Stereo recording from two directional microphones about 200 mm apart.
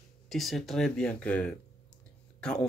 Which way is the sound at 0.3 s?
Centre (ahead or behind).